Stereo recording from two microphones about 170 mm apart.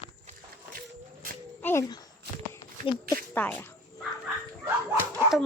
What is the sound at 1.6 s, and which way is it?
Speech, 15° left (ahead or behind).